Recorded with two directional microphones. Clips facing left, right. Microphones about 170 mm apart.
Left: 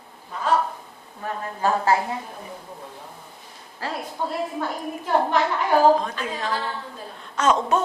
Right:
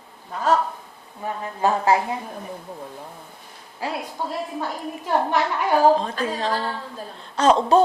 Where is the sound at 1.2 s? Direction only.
15° right (ahead or behind).